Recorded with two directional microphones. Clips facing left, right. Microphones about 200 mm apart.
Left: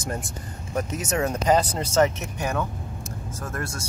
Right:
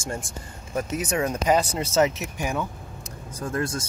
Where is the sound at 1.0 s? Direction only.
10° right (ahead or behind).